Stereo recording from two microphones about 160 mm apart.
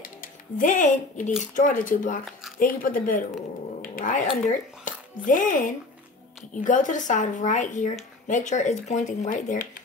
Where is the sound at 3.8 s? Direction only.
60° left (ahead or behind).